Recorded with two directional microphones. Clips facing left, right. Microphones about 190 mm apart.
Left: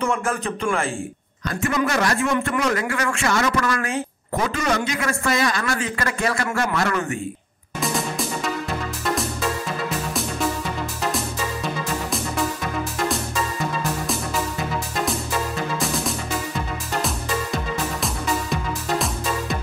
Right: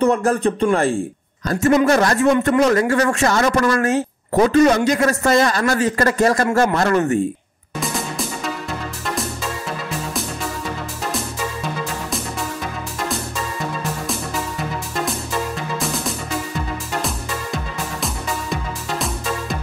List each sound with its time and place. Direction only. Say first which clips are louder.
0.0 s speech: right 7 dB; 35° right (ahead or behind)
7.8 s music: left 1 dB; centre (ahead or behind)
15.8 s music: right 1 dB; centre (ahead or behind)
18.0 s music: left 1 dB; centre (ahead or behind)